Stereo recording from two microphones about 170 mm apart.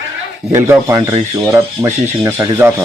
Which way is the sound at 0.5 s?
15° right (ahead or behind).